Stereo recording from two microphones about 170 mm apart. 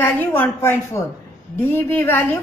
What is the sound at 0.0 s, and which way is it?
A woman's voice, 10° left (ahead or behind).